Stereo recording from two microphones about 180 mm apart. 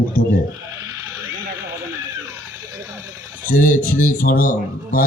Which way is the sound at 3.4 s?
50° left (ahead or behind).